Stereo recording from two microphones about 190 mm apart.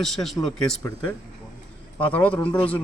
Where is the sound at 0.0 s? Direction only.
Centre (ahead or behind).